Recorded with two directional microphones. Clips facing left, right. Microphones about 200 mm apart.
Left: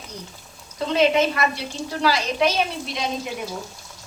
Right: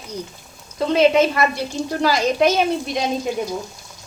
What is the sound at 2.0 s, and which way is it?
A woman's voice, 45° right (ahead or behind).